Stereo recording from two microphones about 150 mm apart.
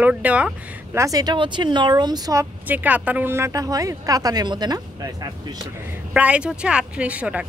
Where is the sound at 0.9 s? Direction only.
20° right (ahead or behind).